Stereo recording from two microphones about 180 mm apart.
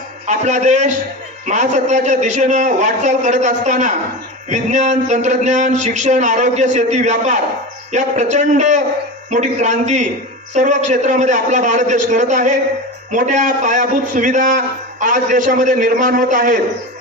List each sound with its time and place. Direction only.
0.3 s a man's voice: 40° right (ahead or behind)